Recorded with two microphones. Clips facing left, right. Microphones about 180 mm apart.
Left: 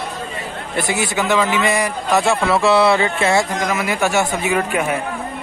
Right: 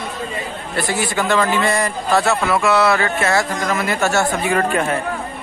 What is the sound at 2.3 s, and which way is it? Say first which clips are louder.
A man's voice: left 2 dB; 30° left (ahead or behind).